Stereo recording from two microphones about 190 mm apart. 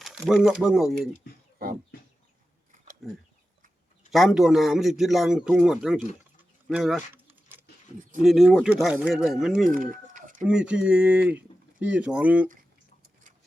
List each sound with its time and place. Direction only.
0.0 s a man's voice: centre (ahead or behind)
3.0 s a man's voice: centre (ahead or behind)
7.1 s keys jangling: 10° right (ahead or behind)
8.2 s a man's voice: centre (ahead or behind)
9.6 s chicken: 45° right (ahead or behind)
10.4 s speech: 5° right (ahead or behind)